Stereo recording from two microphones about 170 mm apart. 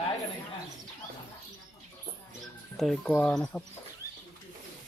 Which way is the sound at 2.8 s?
Centre (ahead or behind).